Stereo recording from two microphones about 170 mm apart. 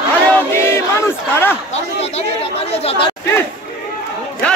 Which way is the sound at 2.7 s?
35° left (ahead or behind).